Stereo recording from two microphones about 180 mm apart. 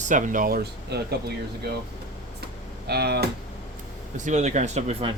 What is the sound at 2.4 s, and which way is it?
Computer keyboard, 65° right (ahead or behind).